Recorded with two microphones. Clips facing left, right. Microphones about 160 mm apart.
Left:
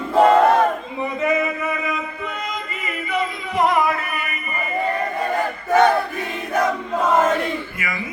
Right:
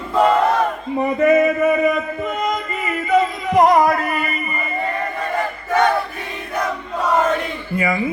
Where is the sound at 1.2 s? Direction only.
50° right (ahead or behind).